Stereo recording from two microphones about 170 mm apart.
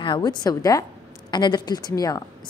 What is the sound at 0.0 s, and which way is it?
A woman's voice, 25° left (ahead or behind).